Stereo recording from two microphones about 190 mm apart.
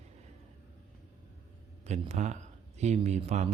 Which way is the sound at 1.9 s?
40° right (ahead or behind).